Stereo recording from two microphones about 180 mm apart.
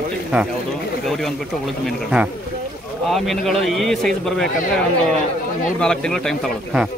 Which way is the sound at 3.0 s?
Centre (ahead or behind).